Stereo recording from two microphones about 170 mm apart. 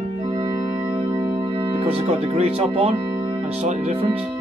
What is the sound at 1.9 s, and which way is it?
Music, 35° right (ahead or behind).